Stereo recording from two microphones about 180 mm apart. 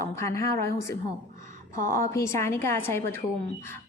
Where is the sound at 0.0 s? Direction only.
15° left (ahead or behind).